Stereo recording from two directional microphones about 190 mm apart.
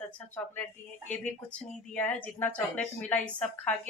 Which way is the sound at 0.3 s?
10° left (ahead or behind).